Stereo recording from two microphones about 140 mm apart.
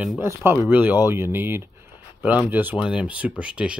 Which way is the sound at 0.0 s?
5° right (ahead or behind).